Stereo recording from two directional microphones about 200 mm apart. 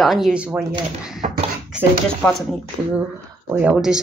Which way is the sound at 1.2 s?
35° right (ahead or behind).